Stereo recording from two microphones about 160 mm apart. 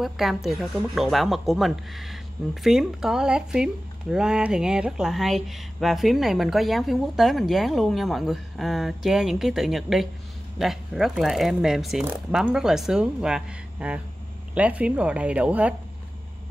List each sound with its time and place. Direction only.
0.0 s speech: centre (ahead or behind)